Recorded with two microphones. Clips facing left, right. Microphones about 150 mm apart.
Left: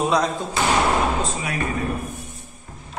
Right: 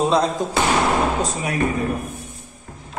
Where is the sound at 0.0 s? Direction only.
30° right (ahead or behind).